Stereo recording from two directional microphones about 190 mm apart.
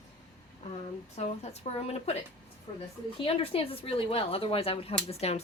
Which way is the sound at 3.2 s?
30° left (ahead or behind).